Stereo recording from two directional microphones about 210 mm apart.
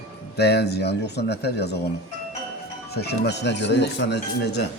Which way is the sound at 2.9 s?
50° left (ahead or behind).